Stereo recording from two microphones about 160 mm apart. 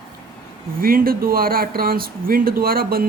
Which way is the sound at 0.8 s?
65° right (ahead or behind).